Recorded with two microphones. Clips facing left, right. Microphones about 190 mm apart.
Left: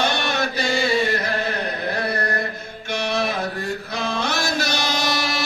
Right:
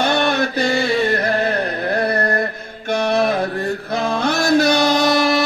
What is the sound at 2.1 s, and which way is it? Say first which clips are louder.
Mantra: right 6 dB; 55° right (ahead or behind).